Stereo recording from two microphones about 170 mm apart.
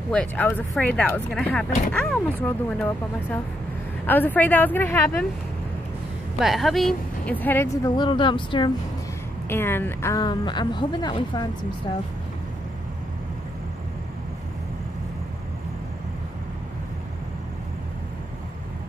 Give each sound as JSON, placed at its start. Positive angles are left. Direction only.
{"t": 0.1, "sound": "speech", "side_deg": 10}
{"t": 6.4, "sound": "speech", "side_deg": 0}
{"t": 9.5, "sound": "a woman's voice", "side_deg": 15}